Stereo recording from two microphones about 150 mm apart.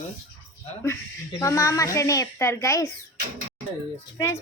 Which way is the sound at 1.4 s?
20° left (ahead or behind).